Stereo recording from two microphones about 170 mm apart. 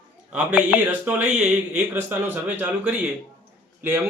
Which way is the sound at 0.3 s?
10° right (ahead or behind).